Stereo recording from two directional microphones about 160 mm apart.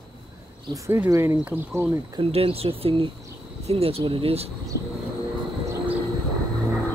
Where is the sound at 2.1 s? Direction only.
35° right (ahead or behind).